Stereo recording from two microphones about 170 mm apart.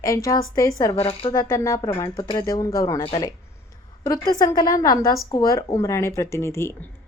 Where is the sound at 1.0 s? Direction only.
35° left (ahead or behind).